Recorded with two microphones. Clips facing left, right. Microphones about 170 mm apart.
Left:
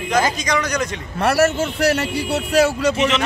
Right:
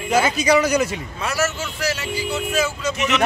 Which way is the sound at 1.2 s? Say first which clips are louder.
Left 8 dB; 60° left (ahead or behind).